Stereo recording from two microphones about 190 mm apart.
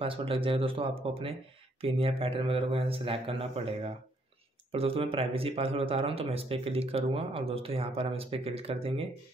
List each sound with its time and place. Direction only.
0.0 s speech: 30° right (ahead or behind)